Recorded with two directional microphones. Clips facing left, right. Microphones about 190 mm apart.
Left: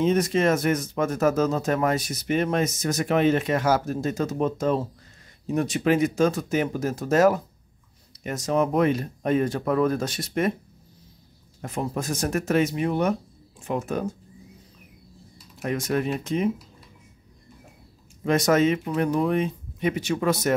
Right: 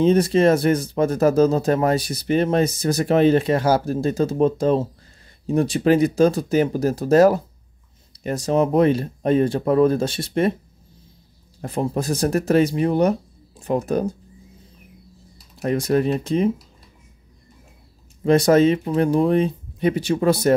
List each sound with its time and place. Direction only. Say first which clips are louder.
0.0 s speech: right 5 dB; 30° right (ahead or behind)
11.6 s speech: right 5 dB; 35° right (ahead or behind)
15.3 s speech: right 6 dB; 35° right (ahead or behind)
18.2 s speech: right 5 dB; 30° right (ahead or behind)